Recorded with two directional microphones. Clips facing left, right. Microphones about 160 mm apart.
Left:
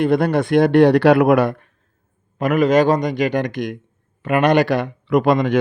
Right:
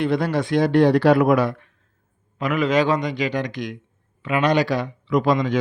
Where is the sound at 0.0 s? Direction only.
55° left (ahead or behind).